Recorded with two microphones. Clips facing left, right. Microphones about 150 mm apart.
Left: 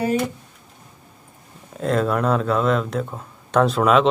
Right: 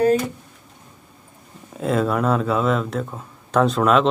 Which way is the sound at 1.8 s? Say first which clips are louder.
Even; 5° right (ahead or behind).